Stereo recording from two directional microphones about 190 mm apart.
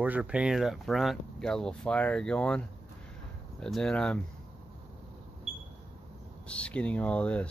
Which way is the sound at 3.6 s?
5° left (ahead or behind).